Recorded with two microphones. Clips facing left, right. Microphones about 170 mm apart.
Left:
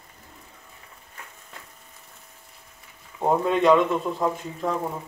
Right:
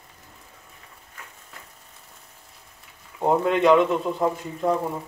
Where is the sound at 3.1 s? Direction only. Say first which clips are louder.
Right 1 dB; 5° right (ahead or behind).